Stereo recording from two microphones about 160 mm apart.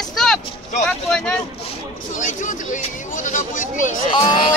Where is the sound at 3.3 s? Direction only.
50° left (ahead or behind).